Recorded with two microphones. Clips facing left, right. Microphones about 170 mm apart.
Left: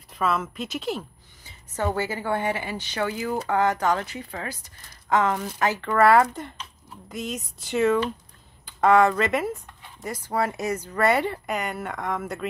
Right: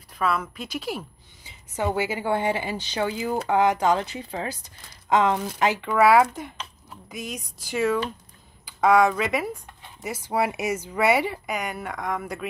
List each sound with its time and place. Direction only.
0.2 s a woman's voice: centre (ahead or behind)